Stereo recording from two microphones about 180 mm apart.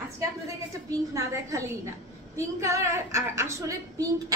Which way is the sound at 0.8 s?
15° right (ahead or behind).